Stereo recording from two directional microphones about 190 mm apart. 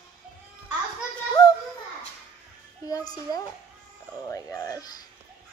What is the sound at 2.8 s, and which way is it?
Speech, 20° left (ahead or behind).